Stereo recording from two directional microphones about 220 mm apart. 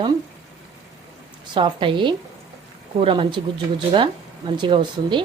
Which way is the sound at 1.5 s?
20° right (ahead or behind).